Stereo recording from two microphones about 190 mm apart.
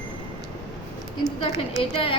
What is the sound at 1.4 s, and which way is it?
Speech, 30° left (ahead or behind).